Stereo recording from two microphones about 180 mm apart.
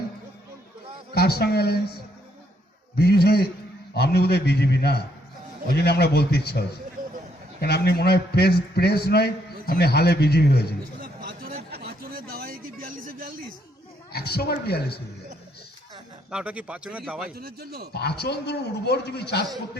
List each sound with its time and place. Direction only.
1.1 s a man's voice: 60° left (ahead or behind)
2.9 s a man's voice: 60° left (ahead or behind)
7.0 s a sound: 50° right (ahead or behind)
7.6 s a man's voice: 60° left (ahead or behind)
11.0 s a sound: 60° right (ahead or behind)
14.1 s a man's voice: 60° left (ahead or behind)
16.3 s a man's voice: 5° right (ahead or behind)
17.3 s a man's voice: 60° right (ahead or behind)
17.9 s a man's voice: 65° left (ahead or behind)